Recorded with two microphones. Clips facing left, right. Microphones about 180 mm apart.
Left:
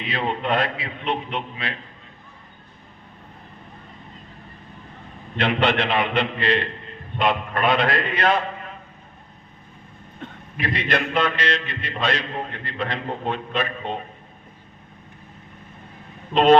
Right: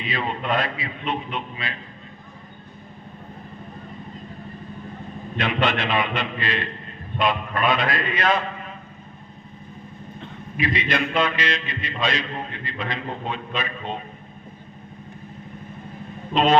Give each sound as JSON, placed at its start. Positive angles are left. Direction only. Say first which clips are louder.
{"t": 0.0, "sound": "a man's voice", "louder": "left 2 dB", "side_deg": 60}
{"t": 5.4, "sound": "a man's voice", "louder": "left 3 dB", "side_deg": 60}
{"t": 10.6, "sound": "a man's voice", "louder": "even", "side_deg": 60}
{"t": 16.3, "sound": "a man's voice", "louder": "left 4 dB", "side_deg": 60}